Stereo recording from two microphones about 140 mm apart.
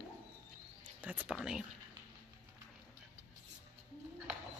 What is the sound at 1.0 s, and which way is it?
Speech, 10° right (ahead or behind).